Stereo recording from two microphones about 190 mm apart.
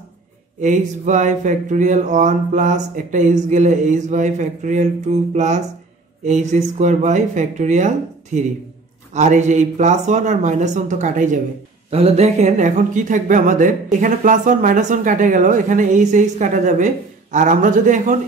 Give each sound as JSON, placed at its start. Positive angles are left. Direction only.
{"t": 0.6, "sound": "speech", "side_deg": -40}